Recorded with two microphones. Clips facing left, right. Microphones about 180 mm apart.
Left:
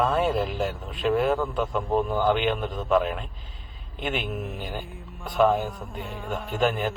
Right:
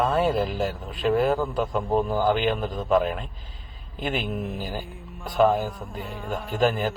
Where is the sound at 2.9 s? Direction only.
40° right (ahead or behind).